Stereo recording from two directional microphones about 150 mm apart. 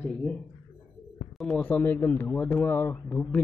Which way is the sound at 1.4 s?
5° left (ahead or behind).